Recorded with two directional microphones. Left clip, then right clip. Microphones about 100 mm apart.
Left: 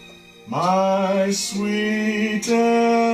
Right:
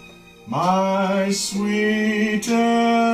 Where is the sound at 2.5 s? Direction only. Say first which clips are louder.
Left 2 dB; 20° right (ahead or behind).